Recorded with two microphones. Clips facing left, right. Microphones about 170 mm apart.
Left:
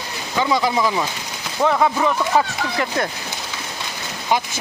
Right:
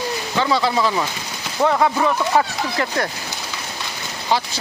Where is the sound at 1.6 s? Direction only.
5° right (ahead or behind).